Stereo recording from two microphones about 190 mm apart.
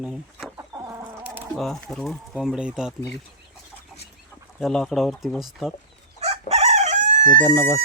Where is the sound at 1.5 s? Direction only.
Centre (ahead or behind).